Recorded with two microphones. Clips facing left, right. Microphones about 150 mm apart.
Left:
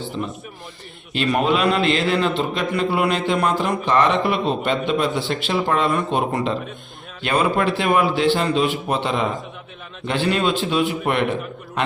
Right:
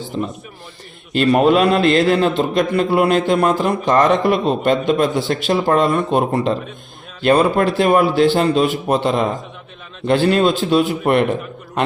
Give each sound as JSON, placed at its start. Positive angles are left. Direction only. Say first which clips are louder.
{"t": 1.1, "sound": "a man's voice", "louder": "right 6 dB", "side_deg": -45}